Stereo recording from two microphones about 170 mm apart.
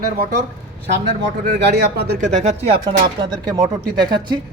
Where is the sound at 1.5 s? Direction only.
80° right.